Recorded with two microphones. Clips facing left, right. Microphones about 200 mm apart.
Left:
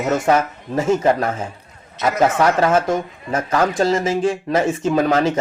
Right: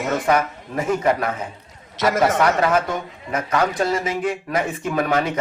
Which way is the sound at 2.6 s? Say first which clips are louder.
Left 3 dB; 30° left (ahead or behind).